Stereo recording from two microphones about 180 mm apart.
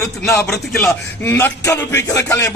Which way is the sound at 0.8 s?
15° left (ahead or behind).